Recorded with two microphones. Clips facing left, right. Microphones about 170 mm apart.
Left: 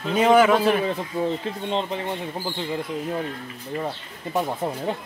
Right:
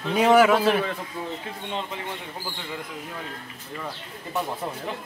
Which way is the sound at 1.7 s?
30° left (ahead or behind).